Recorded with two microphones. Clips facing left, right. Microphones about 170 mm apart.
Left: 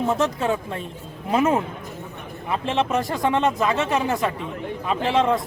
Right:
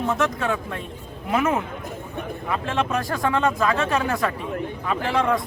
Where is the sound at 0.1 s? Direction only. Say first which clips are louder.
Even; 25° left (ahead or behind).